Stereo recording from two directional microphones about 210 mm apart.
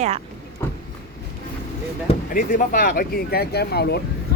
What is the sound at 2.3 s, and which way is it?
Speech, 40° left (ahead or behind).